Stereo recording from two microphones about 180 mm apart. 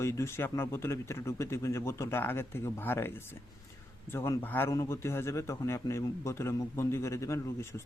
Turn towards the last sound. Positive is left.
turn(degrees=15)  # may be behind; listen again after turning